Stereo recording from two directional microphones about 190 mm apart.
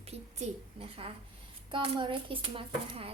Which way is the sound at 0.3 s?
30° right (ahead or behind).